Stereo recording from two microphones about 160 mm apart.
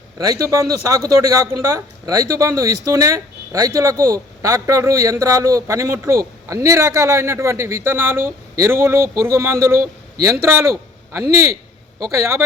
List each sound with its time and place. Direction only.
0.2 s a man's voice: 20° right (ahead or behind)